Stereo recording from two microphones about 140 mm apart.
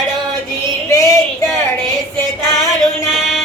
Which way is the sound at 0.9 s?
25° left (ahead or behind).